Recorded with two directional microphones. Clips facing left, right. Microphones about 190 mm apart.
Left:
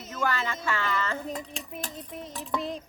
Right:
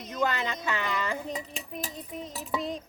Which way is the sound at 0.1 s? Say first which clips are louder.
Right 1 dB; 20° right (ahead or behind).